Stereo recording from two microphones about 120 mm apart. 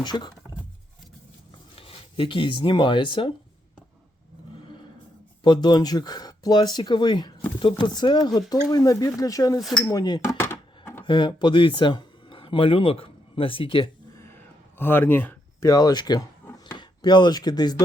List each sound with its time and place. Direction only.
0.0 s speech: 35° left (ahead or behind)
1.7 s speech: 50° left (ahead or behind)
5.4 s speech: 35° left (ahead or behind)
10.3 s a sound: 20° left (ahead or behind)
11.0 s speech: 40° left (ahead or behind)
14.8 s speech: 15° left (ahead or behind)
15.7 s speech: 35° left (ahead or behind)